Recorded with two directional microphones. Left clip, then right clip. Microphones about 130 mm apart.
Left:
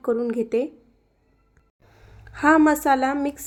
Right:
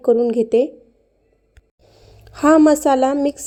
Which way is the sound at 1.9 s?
20° right (ahead or behind).